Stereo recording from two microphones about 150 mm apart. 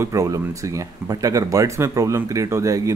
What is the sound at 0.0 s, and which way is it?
Speech, 20° right (ahead or behind).